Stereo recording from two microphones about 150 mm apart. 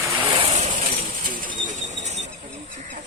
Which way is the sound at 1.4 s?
60° right (ahead or behind).